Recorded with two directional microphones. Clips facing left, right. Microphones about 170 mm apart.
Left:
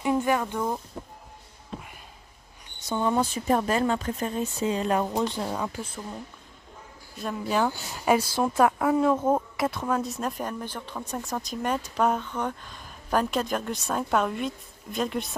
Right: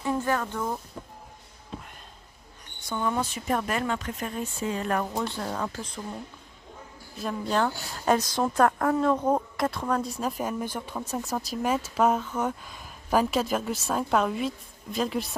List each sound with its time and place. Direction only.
0.0 s speech: 15° left (ahead or behind)
2.8 s speech: 25° left (ahead or behind); by 6.1 s 5° left (ahead or behind)
7.2 s speech: 5° left (ahead or behind)